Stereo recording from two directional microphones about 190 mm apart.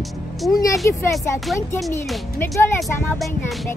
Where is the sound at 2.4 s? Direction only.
15° left (ahead or behind).